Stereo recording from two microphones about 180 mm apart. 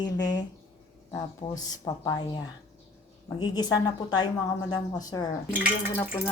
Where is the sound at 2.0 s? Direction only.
20° left (ahead or behind).